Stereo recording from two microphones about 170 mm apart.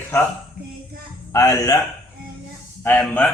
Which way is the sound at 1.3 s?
20° left (ahead or behind).